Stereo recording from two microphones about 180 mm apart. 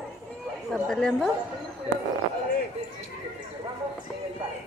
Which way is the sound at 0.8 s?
5° left (ahead or behind).